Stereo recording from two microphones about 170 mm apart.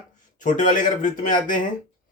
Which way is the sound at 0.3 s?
50° left (ahead or behind).